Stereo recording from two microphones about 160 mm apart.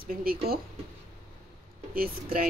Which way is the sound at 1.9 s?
65° right (ahead or behind).